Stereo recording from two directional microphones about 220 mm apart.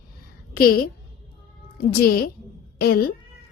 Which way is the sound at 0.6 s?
45° left (ahead or behind).